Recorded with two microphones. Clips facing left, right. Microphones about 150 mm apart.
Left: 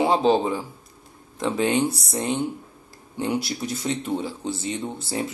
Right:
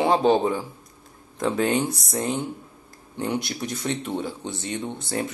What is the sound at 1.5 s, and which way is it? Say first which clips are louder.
Speech: left 1 dB; 20° left (ahead or behind).